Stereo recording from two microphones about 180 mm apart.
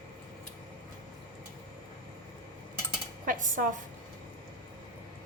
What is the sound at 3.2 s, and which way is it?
Dishes, 50° right (ahead or behind).